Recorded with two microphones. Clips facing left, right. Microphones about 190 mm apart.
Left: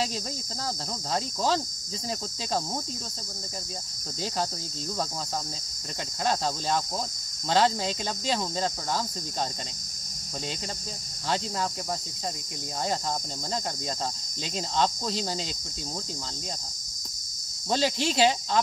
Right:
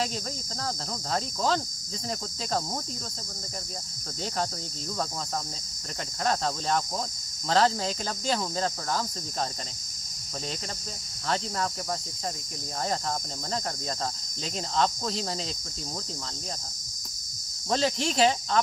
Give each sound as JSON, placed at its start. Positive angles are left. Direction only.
{"t": 1.1, "sound": "speech", "side_deg": 0}
{"t": 6.2, "sound": "speech", "side_deg": 5}
{"t": 14.8, "sound": "speech", "side_deg": 0}
{"t": 17.6, "sound": "speech", "side_deg": 5}